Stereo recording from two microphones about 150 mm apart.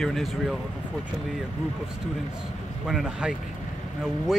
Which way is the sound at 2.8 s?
5° right (ahead or behind).